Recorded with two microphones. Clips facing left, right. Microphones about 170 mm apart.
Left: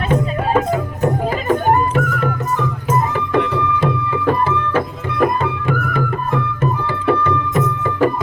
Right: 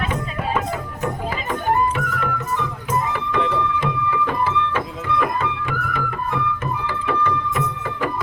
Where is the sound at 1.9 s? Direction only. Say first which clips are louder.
Left 6 dB; 40° left (ahead or behind).